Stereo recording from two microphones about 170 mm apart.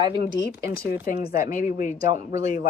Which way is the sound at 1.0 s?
60° left (ahead or behind).